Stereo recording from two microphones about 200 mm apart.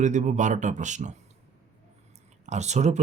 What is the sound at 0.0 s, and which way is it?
Speech, 35° right (ahead or behind).